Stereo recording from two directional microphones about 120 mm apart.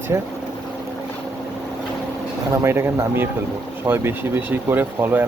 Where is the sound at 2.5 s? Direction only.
20° right (ahead or behind).